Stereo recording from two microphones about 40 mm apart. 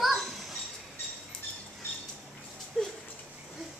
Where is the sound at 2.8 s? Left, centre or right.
Centre.